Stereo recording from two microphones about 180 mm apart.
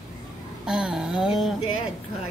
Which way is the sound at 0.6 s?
5° right (ahead or behind).